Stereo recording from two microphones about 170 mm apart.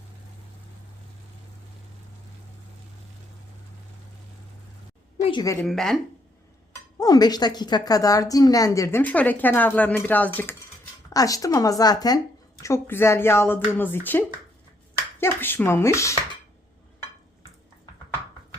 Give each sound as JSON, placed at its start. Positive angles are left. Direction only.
{"t": 5.1, "sound": "a sound", "side_deg": 35}
{"t": 5.6, "sound": "speech", "side_deg": 0}
{"t": 7.0, "sound": "a woman's voice", "side_deg": 25}
{"t": 11.1, "sound": "a woman's voice", "side_deg": 20}